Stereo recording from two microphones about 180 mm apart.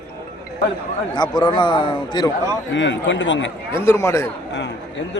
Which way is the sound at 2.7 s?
90° left.